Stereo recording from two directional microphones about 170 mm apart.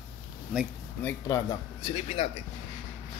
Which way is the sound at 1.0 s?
20° left (ahead or behind).